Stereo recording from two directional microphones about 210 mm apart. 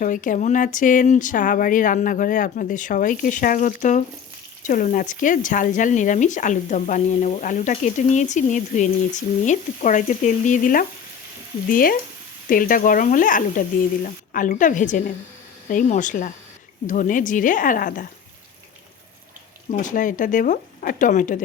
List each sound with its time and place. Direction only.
0.0 s speech: 40° left (ahead or behind)
19.7 s speech: 40° left (ahead or behind)